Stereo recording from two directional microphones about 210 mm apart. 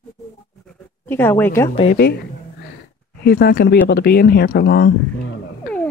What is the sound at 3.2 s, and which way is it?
A man's voice, 50° left (ahead or behind).